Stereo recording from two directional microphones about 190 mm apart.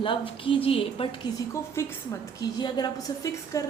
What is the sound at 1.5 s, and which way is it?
A woman's voice, 15° left (ahead or behind).